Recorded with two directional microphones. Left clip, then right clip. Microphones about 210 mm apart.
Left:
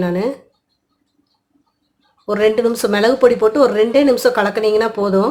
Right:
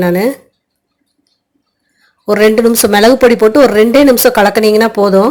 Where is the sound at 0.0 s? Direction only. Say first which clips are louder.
Right 7 dB; 30° right (ahead or behind).